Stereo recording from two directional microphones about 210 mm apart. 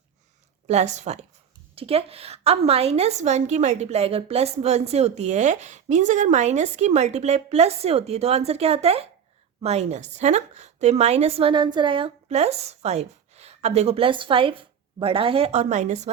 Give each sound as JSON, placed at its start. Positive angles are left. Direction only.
{"t": 0.7, "sound": "a woman's voice", "side_deg": -30}